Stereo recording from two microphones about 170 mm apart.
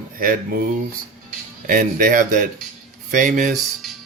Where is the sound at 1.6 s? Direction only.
55° right (ahead or behind).